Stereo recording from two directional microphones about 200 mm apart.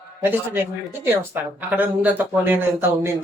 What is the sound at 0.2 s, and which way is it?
Speech, 10° right (ahead or behind).